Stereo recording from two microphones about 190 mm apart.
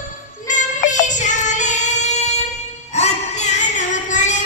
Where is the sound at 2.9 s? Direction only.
35° left (ahead or behind).